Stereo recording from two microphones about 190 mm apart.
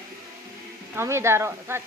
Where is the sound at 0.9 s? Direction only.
15° right (ahead or behind).